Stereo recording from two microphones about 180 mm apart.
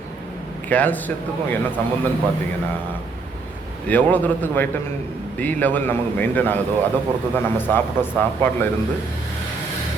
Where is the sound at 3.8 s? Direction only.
10° left (ahead or behind).